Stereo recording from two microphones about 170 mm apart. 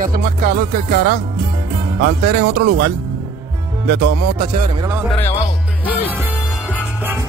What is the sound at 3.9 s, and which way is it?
Music, 90° right.